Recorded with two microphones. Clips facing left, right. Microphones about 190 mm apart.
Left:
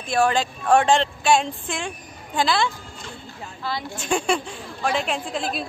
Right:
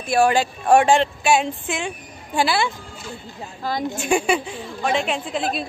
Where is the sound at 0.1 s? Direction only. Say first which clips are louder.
Right 3 dB; 10° right (ahead or behind).